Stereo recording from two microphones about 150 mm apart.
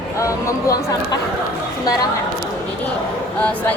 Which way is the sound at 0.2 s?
20° left (ahead or behind).